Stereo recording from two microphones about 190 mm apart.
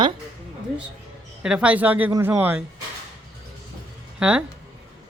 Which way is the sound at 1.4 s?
5° right (ahead or behind).